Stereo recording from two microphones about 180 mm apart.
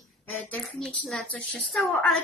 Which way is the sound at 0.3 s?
5° left (ahead or behind).